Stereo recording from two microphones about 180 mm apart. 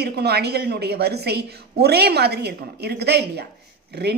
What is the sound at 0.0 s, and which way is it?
A woman's voice, 65° right (ahead or behind).